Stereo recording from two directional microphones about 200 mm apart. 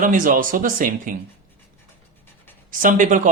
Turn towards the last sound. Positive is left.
turn(degrees=-40)  # may be behind; listen again after turning